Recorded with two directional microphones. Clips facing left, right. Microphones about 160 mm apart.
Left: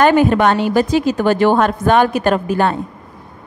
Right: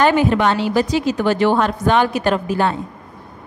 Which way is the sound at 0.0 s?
50° left (ahead or behind).